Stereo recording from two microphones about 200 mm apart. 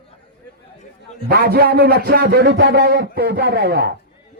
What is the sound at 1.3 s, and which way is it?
A man's voice, 50° right (ahead or behind).